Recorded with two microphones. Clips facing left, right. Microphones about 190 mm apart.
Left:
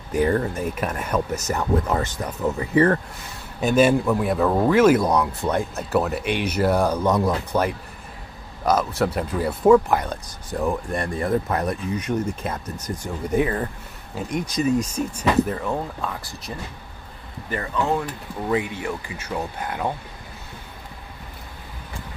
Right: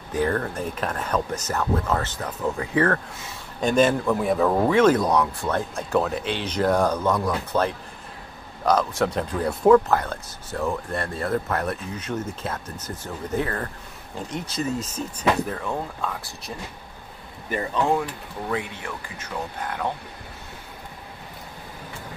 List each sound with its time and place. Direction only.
0.1 s a man's voice: 10° left (ahead or behind)
8.6 s a man's voice: 5° left (ahead or behind)
9.8 s speech: 15° left (ahead or behind)
17.5 s speech: 15° right (ahead or behind)
18.5 s speech: 10° left (ahead or behind)